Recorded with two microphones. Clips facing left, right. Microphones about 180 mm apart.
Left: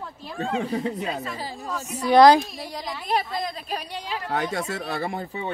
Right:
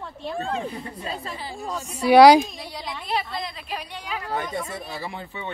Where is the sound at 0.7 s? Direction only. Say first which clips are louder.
Left 8 dB; 90° left.